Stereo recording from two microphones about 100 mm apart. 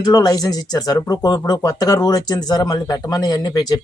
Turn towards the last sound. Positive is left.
turn(degrees=40)  # may be behind; listen again after turning